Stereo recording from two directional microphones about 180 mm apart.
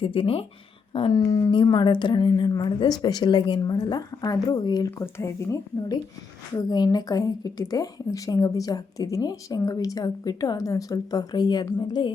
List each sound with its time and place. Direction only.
0.0 s a woman's voice: 30° left (ahead or behind)